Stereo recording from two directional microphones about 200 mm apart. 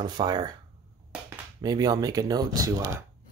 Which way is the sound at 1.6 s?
20° right (ahead or behind).